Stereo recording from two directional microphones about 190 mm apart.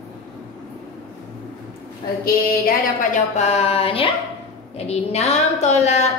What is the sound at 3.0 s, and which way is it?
A woman's voice, 35° left (ahead or behind).